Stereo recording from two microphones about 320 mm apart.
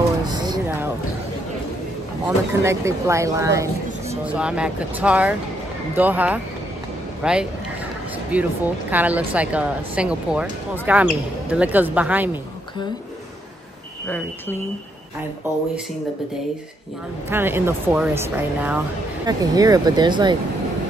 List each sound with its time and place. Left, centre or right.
0.3 s a sound: centre
2.2 s a woman's voice: centre
14.0 s a woman's voice: centre
17.3 s speech: centre